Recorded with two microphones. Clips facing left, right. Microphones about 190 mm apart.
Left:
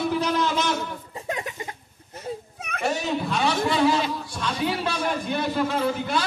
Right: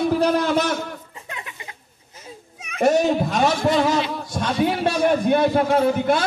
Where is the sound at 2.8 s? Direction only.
45° right (ahead or behind).